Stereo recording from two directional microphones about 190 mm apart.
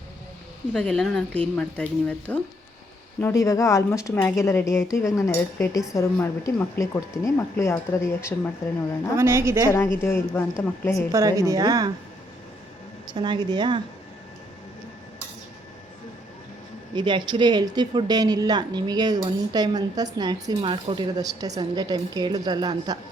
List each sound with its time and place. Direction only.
0.7 s a woman's voice: 5° left (ahead or behind)
9.1 s a woman's voice: 15° right (ahead or behind)
9.6 s a woman's voice: 10° left (ahead or behind)
11.1 s a woman's voice: 15° right (ahead or behind)
13.1 s speech: 25° right (ahead or behind)
16.9 s speech: 25° right (ahead or behind)